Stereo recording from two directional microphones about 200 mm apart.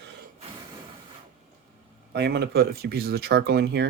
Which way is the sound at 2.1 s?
55° right (ahead or behind).